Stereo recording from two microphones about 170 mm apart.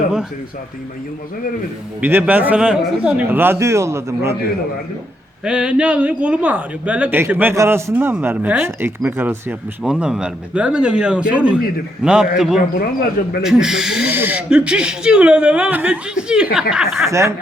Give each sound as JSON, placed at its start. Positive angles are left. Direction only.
{"t": 2.0, "sound": "speech", "side_deg": -10}
{"t": 5.5, "sound": "speech", "side_deg": -5}
{"t": 17.1, "sound": "speech", "side_deg": -15}